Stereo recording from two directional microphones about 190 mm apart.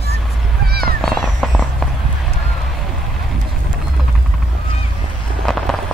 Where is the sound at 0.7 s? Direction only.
55° right (ahead or behind).